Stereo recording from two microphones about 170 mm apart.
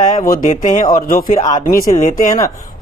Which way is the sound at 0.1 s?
55° left (ahead or behind).